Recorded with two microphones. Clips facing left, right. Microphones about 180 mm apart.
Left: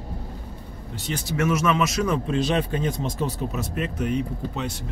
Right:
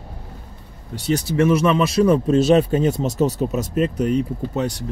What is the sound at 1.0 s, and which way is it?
Speech, 35° right (ahead or behind).